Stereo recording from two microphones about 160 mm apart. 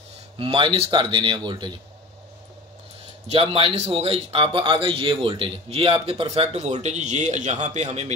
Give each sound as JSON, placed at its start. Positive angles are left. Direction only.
{"t": 0.4, "sound": "a man's voice", "side_deg": -35}
{"t": 3.3, "sound": "a man's voice", "side_deg": -35}